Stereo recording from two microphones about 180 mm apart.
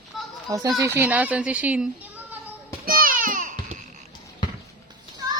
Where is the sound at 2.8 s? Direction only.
55° right (ahead or behind).